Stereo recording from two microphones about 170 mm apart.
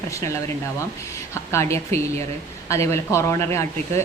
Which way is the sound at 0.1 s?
15° left (ahead or behind).